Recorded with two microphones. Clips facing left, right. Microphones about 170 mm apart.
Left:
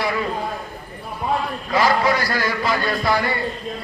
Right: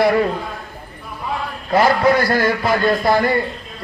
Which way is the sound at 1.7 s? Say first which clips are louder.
Right 4 dB; 55° right (ahead or behind).